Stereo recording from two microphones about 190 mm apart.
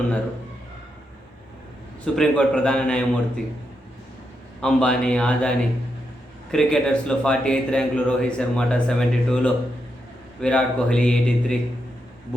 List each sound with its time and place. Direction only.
2.1 s a man's voice: 5° left (ahead or behind)
4.6 s a man's voice: 5° left (ahead or behind)